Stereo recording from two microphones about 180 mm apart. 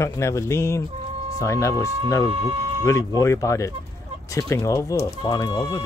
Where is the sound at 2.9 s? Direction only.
15° left (ahead or behind).